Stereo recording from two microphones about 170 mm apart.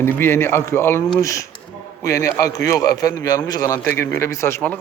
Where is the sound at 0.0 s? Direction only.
15° left (ahead or behind).